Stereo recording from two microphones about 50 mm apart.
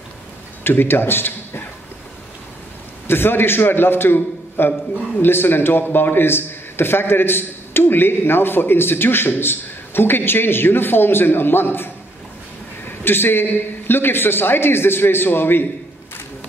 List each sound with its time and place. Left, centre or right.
0.7 s a man's voice: left
3.1 s a man's voice: left